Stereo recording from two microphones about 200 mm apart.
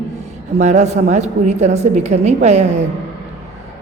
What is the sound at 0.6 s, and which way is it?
A woman's voice, 35° right (ahead or behind).